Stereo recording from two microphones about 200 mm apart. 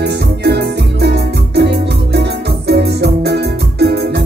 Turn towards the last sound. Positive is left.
turn(degrees=-55)  # may be behind; listen again after turning